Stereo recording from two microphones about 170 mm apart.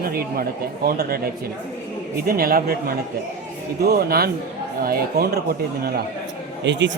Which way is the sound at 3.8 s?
65° right (ahead or behind).